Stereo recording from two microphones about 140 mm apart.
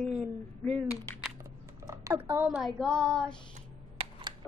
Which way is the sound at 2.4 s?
Centre (ahead or behind).